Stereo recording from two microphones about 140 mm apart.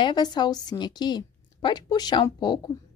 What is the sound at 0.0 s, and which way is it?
A woman's voice, 30° left (ahead or behind).